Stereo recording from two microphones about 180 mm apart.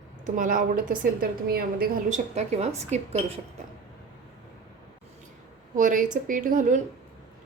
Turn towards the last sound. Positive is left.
turn(degrees=-45)  # may be behind; listen again after turning